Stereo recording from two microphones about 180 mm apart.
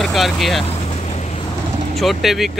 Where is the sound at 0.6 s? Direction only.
35° left (ahead or behind).